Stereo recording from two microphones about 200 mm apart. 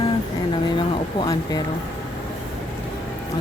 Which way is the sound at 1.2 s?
20° left (ahead or behind).